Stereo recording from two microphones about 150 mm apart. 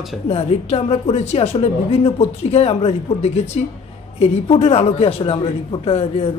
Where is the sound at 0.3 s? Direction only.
40° left (ahead or behind).